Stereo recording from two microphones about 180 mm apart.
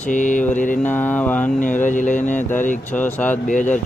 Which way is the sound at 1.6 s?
45° left (ahead or behind).